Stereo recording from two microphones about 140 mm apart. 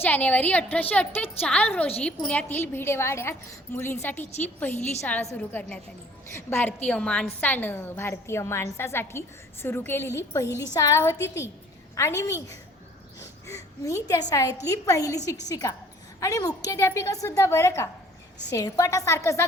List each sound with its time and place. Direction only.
0.0 s a woman's voice: 10° left (ahead or behind)